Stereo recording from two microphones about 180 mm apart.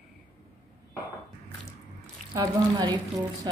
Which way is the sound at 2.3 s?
25° right (ahead or behind).